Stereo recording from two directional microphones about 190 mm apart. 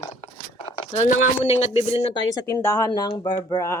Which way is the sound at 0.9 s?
35° left (ahead or behind).